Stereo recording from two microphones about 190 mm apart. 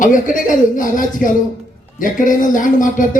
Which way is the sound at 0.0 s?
45° left (ahead or behind).